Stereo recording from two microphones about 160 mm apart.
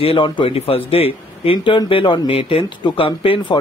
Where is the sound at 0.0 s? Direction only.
35° left (ahead or behind).